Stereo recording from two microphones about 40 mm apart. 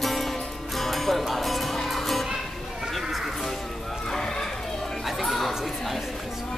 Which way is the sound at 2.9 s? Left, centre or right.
Centre.